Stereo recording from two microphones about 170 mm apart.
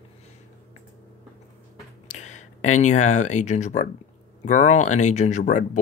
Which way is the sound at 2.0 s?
45° left (ahead or behind).